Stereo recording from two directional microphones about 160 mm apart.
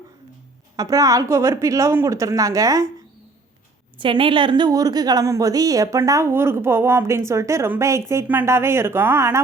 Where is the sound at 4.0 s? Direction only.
30° right (ahead or behind).